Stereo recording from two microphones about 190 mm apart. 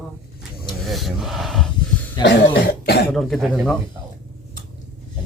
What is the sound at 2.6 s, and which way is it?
Cough, 60° left (ahead or behind).